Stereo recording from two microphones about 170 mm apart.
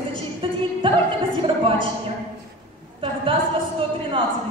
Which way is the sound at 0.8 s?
30° right (ahead or behind).